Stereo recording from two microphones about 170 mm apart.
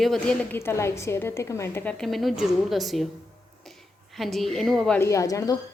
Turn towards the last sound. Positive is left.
turn(degrees=20)  # may be behind; listen again after turning